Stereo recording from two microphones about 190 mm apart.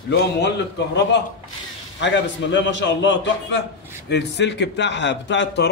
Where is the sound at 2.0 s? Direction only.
70° left (ahead or behind).